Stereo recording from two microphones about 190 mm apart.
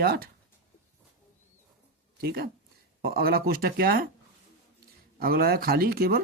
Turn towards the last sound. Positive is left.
turn(degrees=-55)  # may be behind; listen again after turning